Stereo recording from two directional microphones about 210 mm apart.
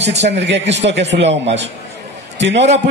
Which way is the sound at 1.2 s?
30° right (ahead or behind).